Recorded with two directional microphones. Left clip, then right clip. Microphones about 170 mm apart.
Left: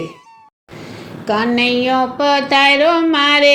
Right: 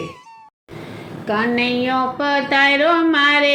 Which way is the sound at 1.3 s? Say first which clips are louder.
Left 3 dB; 40° left (ahead or behind).